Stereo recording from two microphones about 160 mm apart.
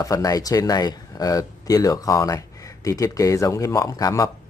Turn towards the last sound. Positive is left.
turn(degrees=20)  # may be behind; listen again after turning